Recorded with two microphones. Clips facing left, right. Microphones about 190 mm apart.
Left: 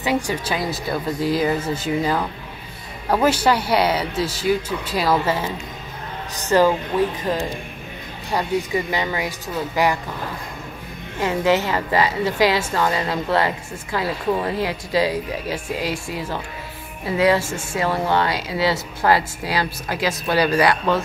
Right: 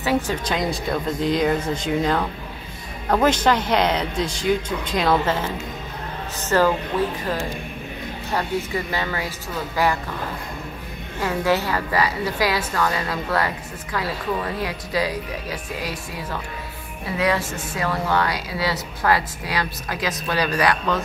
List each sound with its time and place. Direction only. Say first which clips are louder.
0.0 s speech: even; 10° left (ahead or behind)
8.3 s a woman's voice: left 3 dB; 15° left (ahead or behind)
11.1 s a woman's voice: left 2 dB; 15° left (ahead or behind)